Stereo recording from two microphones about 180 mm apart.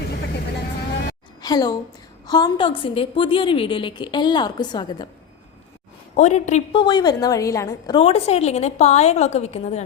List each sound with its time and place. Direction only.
1.4 s a sound: 20° left (ahead or behind)
2.2 s a woman's voice: 25° left (ahead or behind)
6.1 s a woman's voice: 40° left (ahead or behind)
6.7 s a woman's voice: 25° left (ahead or behind)
7.9 s a woman's voice: 35° left (ahead or behind)